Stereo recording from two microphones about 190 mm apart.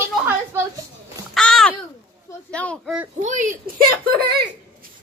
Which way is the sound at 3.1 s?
40° right (ahead or behind).